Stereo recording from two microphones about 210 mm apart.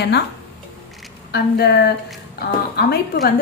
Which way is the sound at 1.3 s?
50° left (ahead or behind).